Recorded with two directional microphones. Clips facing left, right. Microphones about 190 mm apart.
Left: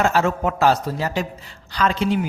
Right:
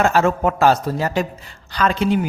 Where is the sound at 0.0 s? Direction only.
50° right (ahead or behind).